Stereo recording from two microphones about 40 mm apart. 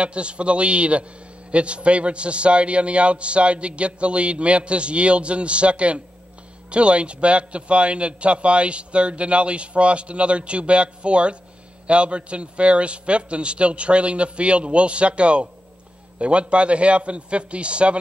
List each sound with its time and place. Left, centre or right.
0.0 s a man's voice: right